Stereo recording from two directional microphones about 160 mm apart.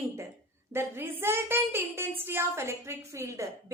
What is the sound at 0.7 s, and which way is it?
A woman's voice, 15° right (ahead or behind).